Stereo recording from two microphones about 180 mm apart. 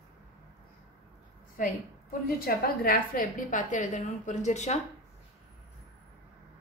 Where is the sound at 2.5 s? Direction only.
55° left (ahead or behind).